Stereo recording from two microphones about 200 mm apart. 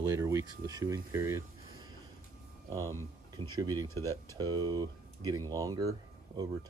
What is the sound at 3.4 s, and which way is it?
Speech, 20° right (ahead or behind).